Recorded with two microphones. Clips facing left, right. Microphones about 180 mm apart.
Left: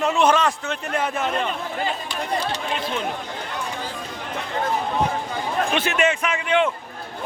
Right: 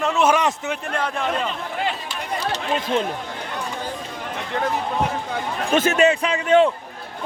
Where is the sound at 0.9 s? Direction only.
5° left (ahead or behind).